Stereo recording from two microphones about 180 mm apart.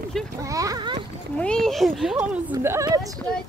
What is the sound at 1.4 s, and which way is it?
Speech, 5° left (ahead or behind).